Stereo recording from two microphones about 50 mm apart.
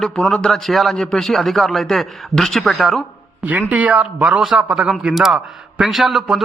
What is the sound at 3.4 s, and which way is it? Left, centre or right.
Speech, right.